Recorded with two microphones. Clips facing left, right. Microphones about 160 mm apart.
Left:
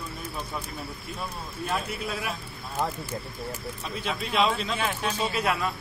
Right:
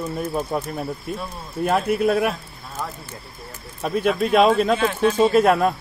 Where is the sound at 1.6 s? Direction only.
55° right (ahead or behind).